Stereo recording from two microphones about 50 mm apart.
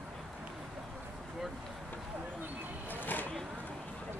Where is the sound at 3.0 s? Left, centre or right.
Left.